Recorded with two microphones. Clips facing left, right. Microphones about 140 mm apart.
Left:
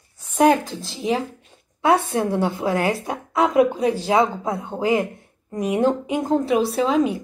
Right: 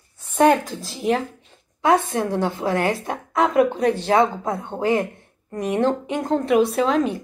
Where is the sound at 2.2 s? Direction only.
15° left (ahead or behind).